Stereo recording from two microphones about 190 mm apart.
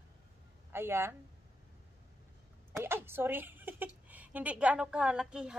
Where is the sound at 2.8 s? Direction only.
10° right (ahead or behind).